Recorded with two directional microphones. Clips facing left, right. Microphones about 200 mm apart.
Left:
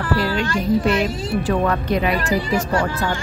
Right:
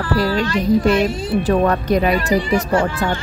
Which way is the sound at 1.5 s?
40° right (ahead or behind).